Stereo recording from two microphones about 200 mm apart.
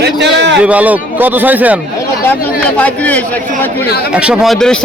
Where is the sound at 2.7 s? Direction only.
5° left (ahead or behind).